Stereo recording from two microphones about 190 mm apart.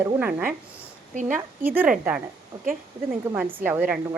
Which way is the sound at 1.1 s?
40° right (ahead or behind).